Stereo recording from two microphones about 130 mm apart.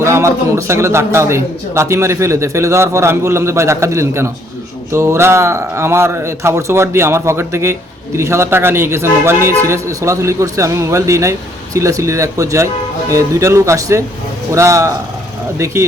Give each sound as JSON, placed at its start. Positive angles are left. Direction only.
{"t": 0.0, "sound": "speech", "side_deg": -20}